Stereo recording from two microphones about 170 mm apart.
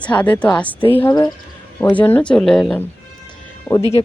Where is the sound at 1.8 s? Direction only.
15° left (ahead or behind).